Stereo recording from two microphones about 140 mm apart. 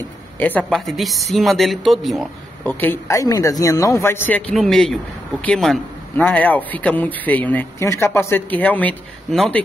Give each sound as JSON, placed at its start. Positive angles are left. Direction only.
{"t": 0.4, "sound": "a woman's voice", "side_deg": 10}
{"t": 2.6, "sound": "a man's voice", "side_deg": 15}